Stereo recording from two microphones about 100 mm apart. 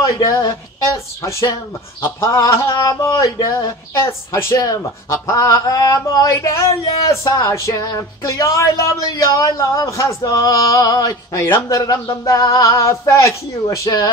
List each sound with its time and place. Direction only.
0.0 s speech: 35° left (ahead or behind)